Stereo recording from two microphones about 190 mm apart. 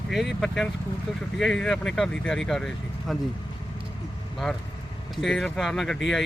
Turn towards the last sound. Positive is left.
turn(degrees=0)  # may be behind; listen again after turning